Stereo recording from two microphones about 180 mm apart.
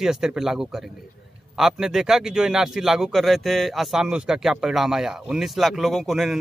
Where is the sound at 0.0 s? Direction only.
5° right (ahead or behind).